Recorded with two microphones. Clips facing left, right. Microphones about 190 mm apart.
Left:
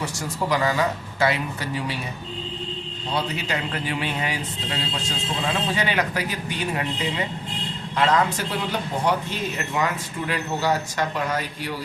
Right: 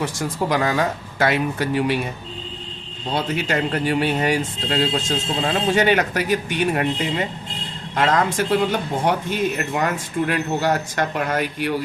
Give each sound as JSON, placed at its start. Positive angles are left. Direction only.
{"t": 0.0, "sound": "a man's voice", "side_deg": -50}
{"t": 3.2, "sound": "a man's voice", "side_deg": -45}